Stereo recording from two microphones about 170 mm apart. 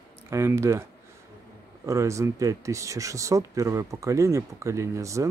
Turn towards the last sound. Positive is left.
turn(degrees=-15)  # may be behind; listen again after turning